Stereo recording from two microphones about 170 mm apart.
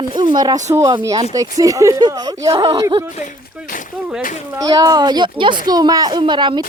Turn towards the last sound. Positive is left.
turn(degrees=-25)  # may be behind; listen again after turning